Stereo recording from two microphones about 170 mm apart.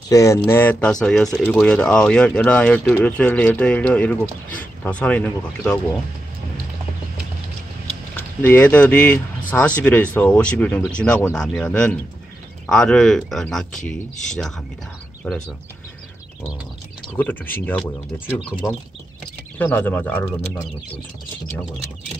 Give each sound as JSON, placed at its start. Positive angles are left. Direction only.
{"t": 0.1, "sound": "speech", "side_deg": 20}
{"t": 8.2, "sound": "speech", "side_deg": 10}
{"t": 15.2, "sound": "speech", "side_deg": 5}
{"t": 17.2, "sound": "speech", "side_deg": 10}
{"t": 19.6, "sound": "speech", "side_deg": 10}